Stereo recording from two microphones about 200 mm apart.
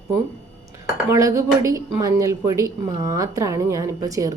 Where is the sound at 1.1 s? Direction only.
15° right (ahead or behind).